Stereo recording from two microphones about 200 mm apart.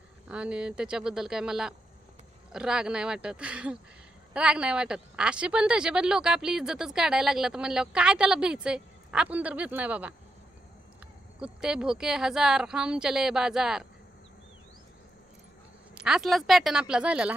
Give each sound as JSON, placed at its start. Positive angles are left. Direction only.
{"t": 0.3, "sound": "a woman's voice", "side_deg": -5}
{"t": 11.3, "sound": "a woman's voice", "side_deg": -5}
{"t": 16.0, "sound": "a woman's voice", "side_deg": 0}